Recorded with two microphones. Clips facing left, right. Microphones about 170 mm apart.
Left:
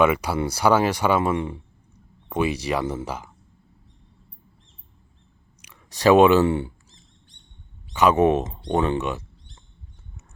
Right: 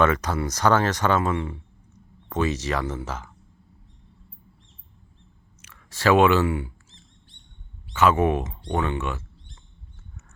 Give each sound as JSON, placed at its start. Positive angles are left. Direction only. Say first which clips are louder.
{"t": 0.0, "sound": "speech", "louder": "left 2 dB", "side_deg": 10}
{"t": 5.6, "sound": "speech", "louder": "left 4 dB", "side_deg": 15}
{"t": 6.4, "sound": "speech", "louder": "left 4 dB", "side_deg": 30}
{"t": 7.9, "sound": "speech", "louder": "left 3 dB", "side_deg": 20}